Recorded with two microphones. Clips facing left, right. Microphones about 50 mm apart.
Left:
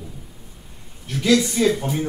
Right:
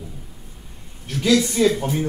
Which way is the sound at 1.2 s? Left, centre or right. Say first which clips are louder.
Right 1 dB; centre.